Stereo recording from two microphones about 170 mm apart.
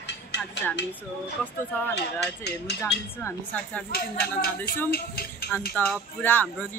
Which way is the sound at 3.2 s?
10° left (ahead or behind).